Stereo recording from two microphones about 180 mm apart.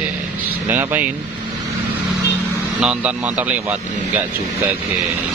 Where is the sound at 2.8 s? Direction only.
5° right (ahead or behind).